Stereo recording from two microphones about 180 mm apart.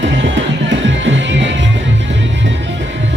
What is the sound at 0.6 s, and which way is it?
Music, 90° right.